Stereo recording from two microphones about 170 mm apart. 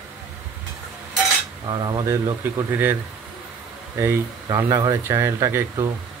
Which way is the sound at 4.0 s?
15° right (ahead or behind).